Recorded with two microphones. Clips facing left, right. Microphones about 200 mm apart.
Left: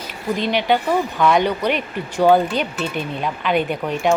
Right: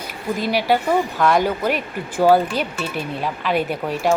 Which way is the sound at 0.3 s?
5° right (ahead or behind).